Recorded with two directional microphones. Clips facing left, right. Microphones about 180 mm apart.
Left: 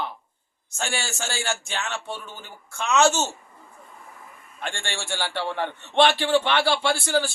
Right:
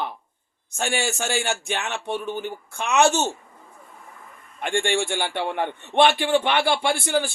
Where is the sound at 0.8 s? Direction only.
15° right (ahead or behind).